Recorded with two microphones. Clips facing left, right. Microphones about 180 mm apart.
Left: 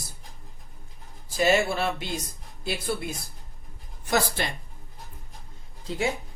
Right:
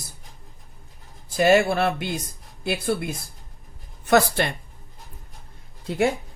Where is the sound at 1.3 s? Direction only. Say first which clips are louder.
Right 5 dB; 60° right (ahead or behind).